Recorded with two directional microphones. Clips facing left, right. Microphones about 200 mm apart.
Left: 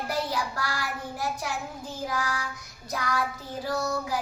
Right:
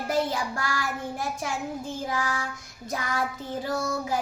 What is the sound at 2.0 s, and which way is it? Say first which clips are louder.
Child singing: left 1 dB; 25° right (ahead or behind).